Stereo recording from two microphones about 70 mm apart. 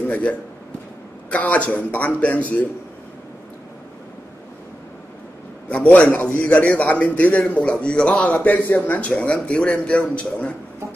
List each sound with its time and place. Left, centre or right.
0.1 s a man's voice: left
5.7 s a man's voice: centre